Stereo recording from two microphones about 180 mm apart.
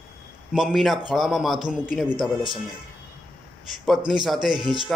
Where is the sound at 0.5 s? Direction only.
5° right (ahead or behind).